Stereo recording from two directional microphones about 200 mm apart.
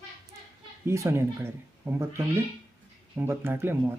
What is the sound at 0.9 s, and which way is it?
Speech, 15° right (ahead or behind).